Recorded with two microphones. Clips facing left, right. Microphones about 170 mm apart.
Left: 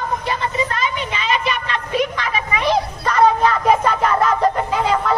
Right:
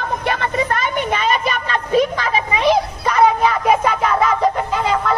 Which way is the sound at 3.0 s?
10° right (ahead or behind).